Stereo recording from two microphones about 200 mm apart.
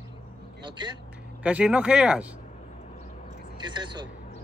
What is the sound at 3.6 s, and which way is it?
Speech, 20° right (ahead or behind).